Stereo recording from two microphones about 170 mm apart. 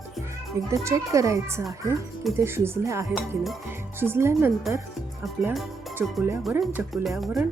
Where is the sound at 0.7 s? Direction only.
20° right (ahead or behind).